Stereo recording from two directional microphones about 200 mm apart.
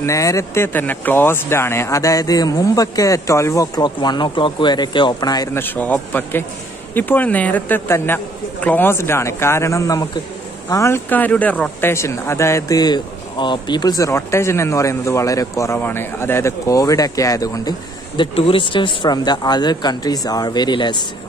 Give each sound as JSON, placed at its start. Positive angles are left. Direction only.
{"t": 0.0, "sound": "speech", "side_deg": 15}